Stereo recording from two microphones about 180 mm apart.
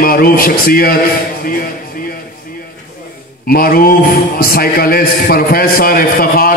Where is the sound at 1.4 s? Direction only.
55° left (ahead or behind).